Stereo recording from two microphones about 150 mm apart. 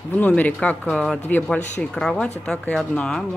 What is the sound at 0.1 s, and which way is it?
Speech, 10° left (ahead or behind).